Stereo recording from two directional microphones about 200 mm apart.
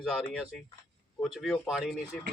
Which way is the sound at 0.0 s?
Centre (ahead or behind).